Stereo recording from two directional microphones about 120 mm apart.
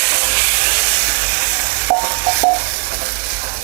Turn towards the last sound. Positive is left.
turn(degrees=-25)  # may be behind; listen again after turning